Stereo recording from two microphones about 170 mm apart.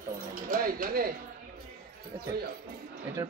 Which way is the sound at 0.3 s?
55° right (ahead or behind).